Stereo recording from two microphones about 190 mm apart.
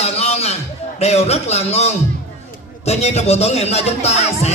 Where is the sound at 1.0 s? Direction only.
35° left (ahead or behind).